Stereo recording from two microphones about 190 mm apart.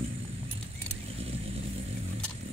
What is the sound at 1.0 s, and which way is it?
Vehicle, 30° right (ahead or behind).